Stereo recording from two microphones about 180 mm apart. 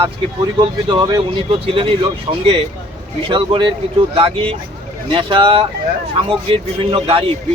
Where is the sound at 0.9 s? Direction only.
25° right (ahead or behind).